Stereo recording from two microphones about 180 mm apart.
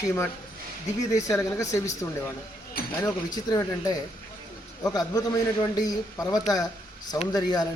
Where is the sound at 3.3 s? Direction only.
20° left (ahead or behind).